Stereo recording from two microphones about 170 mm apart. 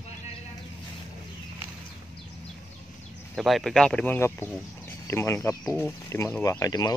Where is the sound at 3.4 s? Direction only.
Centre (ahead or behind).